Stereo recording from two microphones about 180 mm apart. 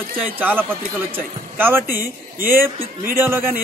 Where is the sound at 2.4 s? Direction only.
55° right (ahead or behind).